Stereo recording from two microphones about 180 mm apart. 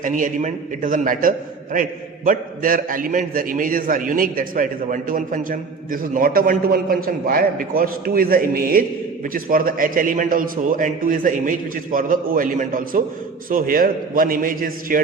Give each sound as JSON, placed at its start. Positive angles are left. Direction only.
{"t": 0.0, "sound": "a man's voice", "side_deg": -45}